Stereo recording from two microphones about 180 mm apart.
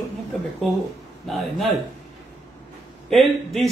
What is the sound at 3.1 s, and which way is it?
Speech, centre (ahead or behind).